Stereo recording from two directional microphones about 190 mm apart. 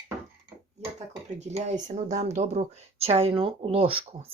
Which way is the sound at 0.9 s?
35° right (ahead or behind).